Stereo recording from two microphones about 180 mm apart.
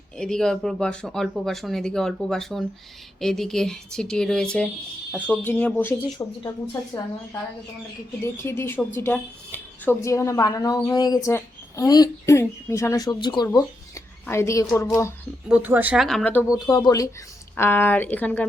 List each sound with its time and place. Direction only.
0.2 s a woman's voice: 5° left (ahead or behind)
6.2 s speech: 20° left (ahead or behind)
8.2 s a woman's voice: 15° left (ahead or behind)
15.4 s speech: 10° right (ahead or behind); by 16.5 s 10° left (ahead or behind)
16.6 s a woman's voice: 20° left (ahead or behind)